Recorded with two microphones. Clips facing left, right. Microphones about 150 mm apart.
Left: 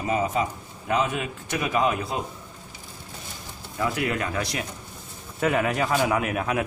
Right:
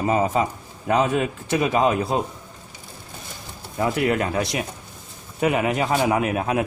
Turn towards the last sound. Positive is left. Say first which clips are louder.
# right 3 dB
turn(degrees=-25)  # may be behind; listen again after turning